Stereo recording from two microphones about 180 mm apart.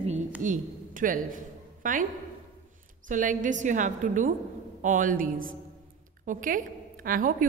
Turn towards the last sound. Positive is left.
turn(degrees=-50)  # may be behind; listen again after turning